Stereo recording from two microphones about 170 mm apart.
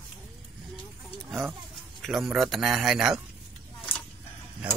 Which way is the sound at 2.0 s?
Centre (ahead or behind).